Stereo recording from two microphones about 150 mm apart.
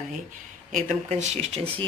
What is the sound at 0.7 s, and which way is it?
Speech, 55° right (ahead or behind).